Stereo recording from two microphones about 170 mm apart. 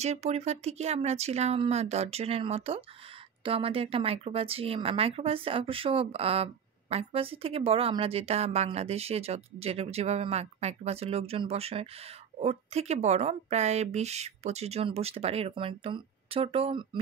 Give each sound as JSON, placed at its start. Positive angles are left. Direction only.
{"t": 0.0, "sound": "speech", "side_deg": -40}